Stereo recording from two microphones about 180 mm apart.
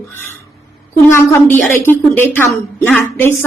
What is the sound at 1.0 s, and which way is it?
A woman's voice, 15° left (ahead or behind).